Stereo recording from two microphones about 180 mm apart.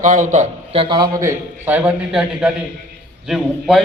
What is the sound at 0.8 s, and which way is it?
Speech, 25° right (ahead or behind).